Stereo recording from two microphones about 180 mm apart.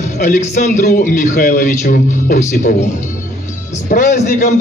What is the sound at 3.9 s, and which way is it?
Speech, 45° left (ahead or behind).